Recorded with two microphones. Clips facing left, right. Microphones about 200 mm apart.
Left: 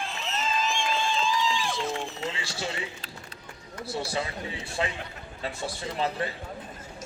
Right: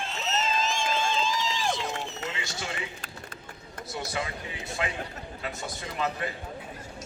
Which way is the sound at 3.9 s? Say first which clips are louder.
Left 3 dB; 30° left (ahead or behind).